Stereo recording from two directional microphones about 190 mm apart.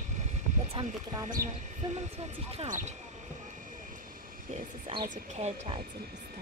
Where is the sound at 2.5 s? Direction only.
35° right (ahead or behind).